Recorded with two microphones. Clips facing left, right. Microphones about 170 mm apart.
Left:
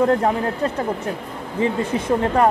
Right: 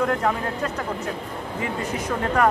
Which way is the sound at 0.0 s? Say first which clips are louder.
Left 5 dB; 30° left (ahead or behind).